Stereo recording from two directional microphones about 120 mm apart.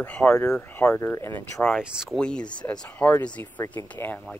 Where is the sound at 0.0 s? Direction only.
15° left (ahead or behind).